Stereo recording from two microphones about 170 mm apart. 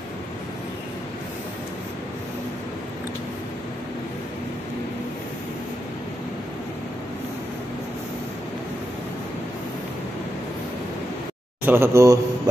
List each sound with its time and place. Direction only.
11.6 s a man's voice: 15° right (ahead or behind)